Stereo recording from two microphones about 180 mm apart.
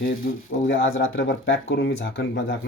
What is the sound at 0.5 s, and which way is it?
Speech, 90° left.